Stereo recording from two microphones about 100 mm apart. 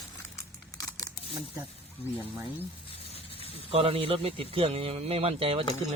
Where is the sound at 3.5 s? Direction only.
75° right (ahead or behind).